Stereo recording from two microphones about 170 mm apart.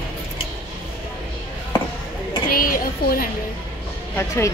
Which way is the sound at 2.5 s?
55° left (ahead or behind).